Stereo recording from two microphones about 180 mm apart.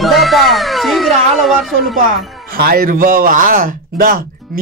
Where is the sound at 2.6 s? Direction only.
55° right (ahead or behind).